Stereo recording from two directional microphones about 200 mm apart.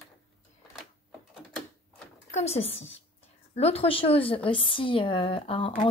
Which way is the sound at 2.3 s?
30° left (ahead or behind).